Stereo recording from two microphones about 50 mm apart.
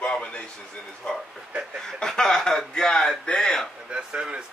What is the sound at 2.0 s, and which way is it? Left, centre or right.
Speech, centre.